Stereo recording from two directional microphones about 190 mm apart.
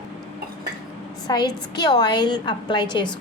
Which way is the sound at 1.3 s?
20° left (ahead or behind).